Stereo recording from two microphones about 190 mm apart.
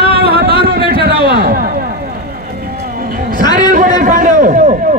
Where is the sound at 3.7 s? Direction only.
45° right (ahead or behind).